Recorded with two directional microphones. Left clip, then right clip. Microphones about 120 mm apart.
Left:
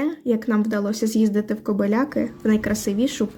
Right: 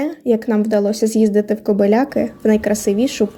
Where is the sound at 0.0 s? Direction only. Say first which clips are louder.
Right 5 dB; 20° right (ahead or behind).